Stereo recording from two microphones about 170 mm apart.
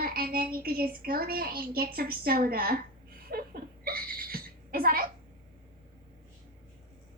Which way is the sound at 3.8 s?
60° right (ahead or behind).